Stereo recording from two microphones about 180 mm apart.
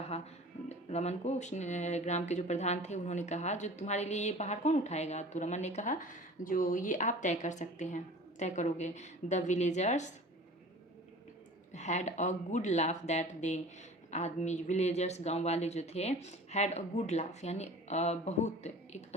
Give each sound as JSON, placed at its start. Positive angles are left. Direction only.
{"t": 0.7, "sound": "speech", "side_deg": 35}
{"t": 11.7, "sound": "speech", "side_deg": 40}